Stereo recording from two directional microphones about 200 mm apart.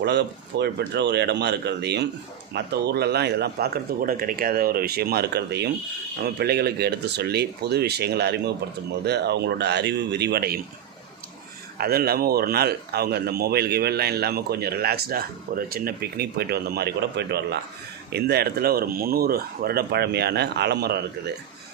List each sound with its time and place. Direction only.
0.0 s speech: 60° right (ahead or behind)
11.8 s speech: 50° right (ahead or behind)